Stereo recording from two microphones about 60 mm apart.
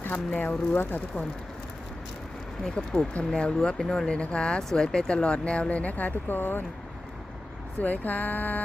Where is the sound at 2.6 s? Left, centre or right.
Centre; by 6.7 s left.